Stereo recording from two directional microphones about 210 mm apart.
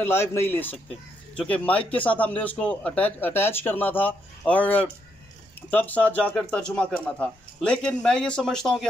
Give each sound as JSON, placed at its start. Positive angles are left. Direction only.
{"t": 0.0, "sound": "speech", "side_deg": 10}